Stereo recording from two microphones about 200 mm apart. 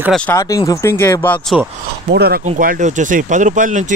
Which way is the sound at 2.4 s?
40° right (ahead or behind).